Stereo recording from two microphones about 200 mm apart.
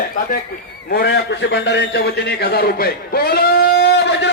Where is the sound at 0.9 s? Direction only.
60° left (ahead or behind).